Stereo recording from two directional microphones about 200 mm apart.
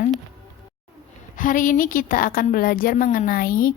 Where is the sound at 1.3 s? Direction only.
40° left (ahead or behind).